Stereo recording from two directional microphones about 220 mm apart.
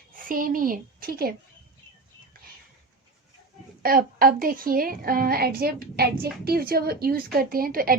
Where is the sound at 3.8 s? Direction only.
40° right (ahead or behind).